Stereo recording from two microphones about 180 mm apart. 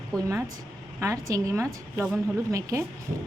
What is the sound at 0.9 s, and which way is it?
A woman's voice, 15° right (ahead or behind).